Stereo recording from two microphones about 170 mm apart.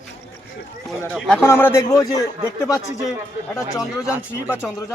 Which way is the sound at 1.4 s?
15° left (ahead or behind).